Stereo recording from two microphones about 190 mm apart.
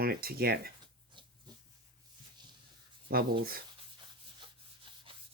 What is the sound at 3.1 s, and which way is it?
Speech, 50° right (ahead or behind).